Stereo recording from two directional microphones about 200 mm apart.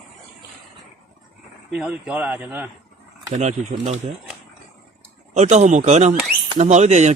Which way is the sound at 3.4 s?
35° right (ahead or behind).